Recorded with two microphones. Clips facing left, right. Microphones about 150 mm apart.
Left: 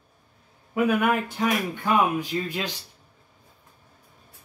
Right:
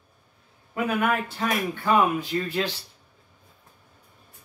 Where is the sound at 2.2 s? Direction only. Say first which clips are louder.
Right 2 dB; 15° left (ahead or behind).